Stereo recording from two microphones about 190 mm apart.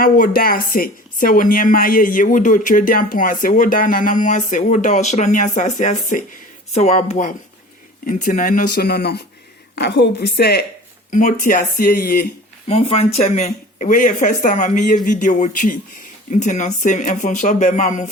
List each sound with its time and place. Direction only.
0.0 s a woman's voice: 50° left (ahead or behind)
11.1 s speech: 40° left (ahead or behind)
12.6 s speech: 30° left (ahead or behind)